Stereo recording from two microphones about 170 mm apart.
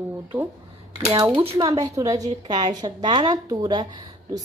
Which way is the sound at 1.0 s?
30° right (ahead or behind).